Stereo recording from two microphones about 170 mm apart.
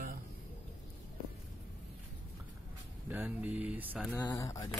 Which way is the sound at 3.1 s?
10° right (ahead or behind).